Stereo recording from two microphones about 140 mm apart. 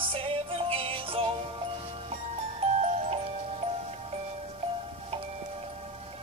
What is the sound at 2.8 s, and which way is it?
Music, 55° right (ahead or behind).